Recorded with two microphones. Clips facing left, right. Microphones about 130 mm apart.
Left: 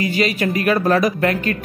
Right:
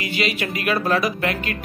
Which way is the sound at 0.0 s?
40° left (ahead or behind).